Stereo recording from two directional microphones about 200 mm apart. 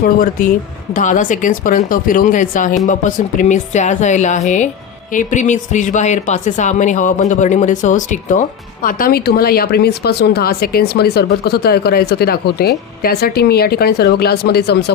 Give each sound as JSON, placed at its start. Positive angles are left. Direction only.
{"t": 0.0, "sound": "speech", "side_deg": 45}